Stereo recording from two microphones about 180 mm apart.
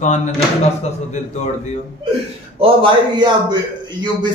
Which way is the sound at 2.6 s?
25° right (ahead or behind).